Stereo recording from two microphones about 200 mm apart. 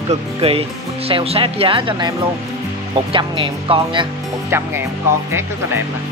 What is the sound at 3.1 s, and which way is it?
Speech, 25° right (ahead or behind).